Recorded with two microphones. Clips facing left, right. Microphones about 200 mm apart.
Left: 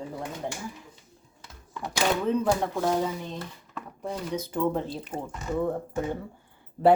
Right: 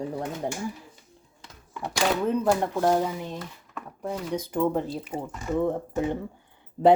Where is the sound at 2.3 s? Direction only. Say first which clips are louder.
Right 1 dB; 5° right (ahead or behind).